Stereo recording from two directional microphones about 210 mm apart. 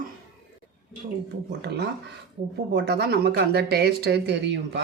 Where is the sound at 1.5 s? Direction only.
55° right (ahead or behind).